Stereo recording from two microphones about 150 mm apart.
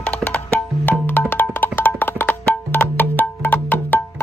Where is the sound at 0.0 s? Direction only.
10° left (ahead or behind).